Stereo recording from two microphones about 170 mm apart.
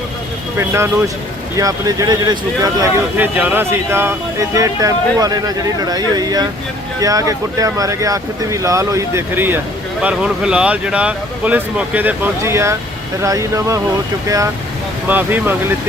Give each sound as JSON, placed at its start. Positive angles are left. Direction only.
{"t": 0.5, "sound": "speech", "side_deg": -15}
{"t": 2.8, "sound": "speech", "side_deg": -10}